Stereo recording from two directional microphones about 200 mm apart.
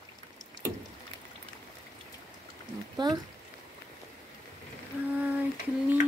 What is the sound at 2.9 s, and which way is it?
Speech, 20° right (ahead or behind).